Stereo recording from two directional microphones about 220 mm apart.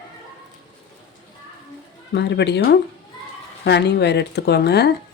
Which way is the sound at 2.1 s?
50° left (ahead or behind).